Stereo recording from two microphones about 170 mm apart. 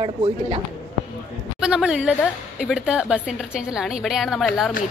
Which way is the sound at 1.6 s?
5° right (ahead or behind).